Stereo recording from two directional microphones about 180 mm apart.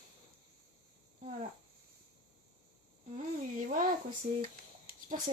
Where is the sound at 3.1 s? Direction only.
45° right (ahead or behind).